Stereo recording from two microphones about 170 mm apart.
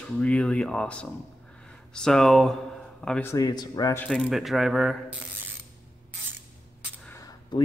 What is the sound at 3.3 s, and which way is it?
Speech, 20° left (ahead or behind).